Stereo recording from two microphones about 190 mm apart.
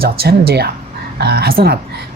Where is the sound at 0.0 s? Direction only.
55° right (ahead or behind).